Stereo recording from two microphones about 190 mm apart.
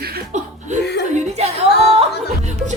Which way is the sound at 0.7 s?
40° right (ahead or behind).